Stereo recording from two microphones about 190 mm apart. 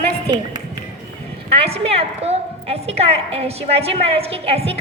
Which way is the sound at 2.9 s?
30° right (ahead or behind).